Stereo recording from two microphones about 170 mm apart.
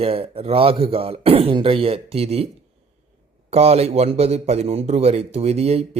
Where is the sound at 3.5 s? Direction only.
40° right (ahead or behind).